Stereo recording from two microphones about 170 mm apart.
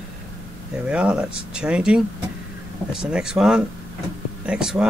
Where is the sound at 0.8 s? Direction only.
5° right (ahead or behind).